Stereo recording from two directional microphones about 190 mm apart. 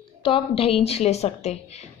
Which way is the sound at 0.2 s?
30° left (ahead or behind).